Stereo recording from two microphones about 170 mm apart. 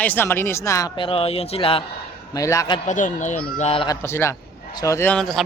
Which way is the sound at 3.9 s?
15° left (ahead or behind).